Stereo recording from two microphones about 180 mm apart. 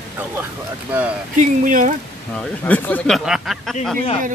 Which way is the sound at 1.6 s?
50° right (ahead or behind).